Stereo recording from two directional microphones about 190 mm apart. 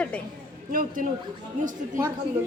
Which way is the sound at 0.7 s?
50° right (ahead or behind).